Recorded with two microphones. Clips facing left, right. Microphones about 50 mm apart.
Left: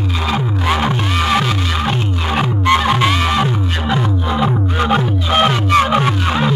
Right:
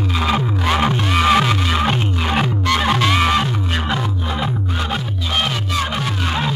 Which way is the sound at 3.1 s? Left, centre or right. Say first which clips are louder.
Right 1 dB; centre.